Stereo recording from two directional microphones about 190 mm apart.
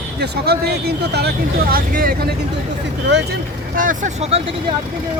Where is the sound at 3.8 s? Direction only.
40° right (ahead or behind).